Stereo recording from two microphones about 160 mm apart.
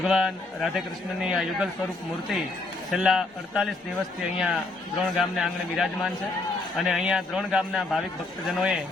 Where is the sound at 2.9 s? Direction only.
5° right (ahead or behind).